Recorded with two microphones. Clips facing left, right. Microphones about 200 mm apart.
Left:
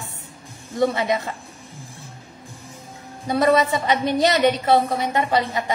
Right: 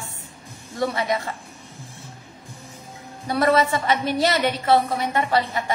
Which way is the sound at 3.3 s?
20° left (ahead or behind).